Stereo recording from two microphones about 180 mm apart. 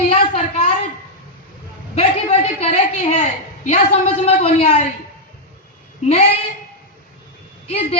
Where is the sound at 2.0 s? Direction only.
35° left (ahead or behind).